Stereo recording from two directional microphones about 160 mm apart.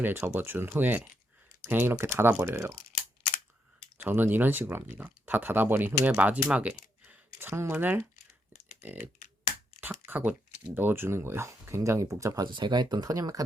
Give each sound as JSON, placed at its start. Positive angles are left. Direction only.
{"t": 0.0, "sound": "speech", "side_deg": -15}
{"t": 3.9, "sound": "speech", "side_deg": -10}
{"t": 10.1, "sound": "speech", "side_deg": -10}